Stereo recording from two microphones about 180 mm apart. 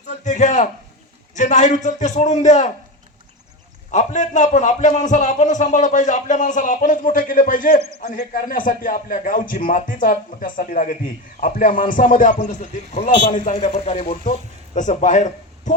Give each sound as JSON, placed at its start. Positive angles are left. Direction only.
{"t": 0.3, "sound": "a man's voice", "side_deg": 40}
{"t": 3.9, "sound": "a man's voice", "side_deg": 40}
{"t": 13.7, "sound": "speech", "side_deg": 30}